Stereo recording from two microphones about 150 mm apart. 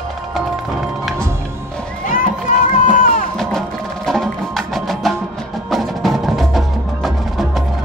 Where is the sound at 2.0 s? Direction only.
60° left (ahead or behind).